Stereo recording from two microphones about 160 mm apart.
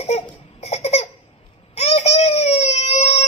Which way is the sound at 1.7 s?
40° left (ahead or behind).